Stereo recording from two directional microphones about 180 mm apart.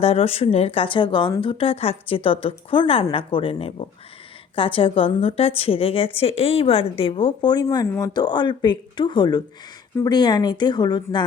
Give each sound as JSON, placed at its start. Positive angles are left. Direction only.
{"t": 0.0, "sound": "a woman's voice", "side_deg": 35}